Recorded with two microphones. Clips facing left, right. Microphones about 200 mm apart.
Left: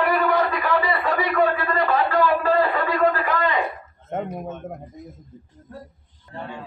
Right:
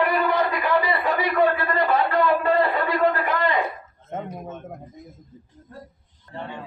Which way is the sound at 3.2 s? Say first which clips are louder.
Left 1 dB; 30° right (ahead or behind).